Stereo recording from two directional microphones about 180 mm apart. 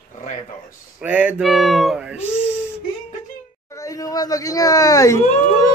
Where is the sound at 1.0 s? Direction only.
10° right (ahead or behind).